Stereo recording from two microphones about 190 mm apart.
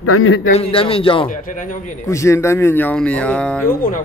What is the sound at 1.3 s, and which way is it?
Speech, 45° left (ahead or behind).